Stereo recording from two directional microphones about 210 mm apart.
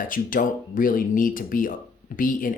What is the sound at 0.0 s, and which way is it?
Speech, 40° left (ahead or behind).